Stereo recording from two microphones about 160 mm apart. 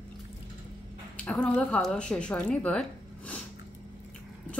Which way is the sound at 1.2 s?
10° left (ahead or behind).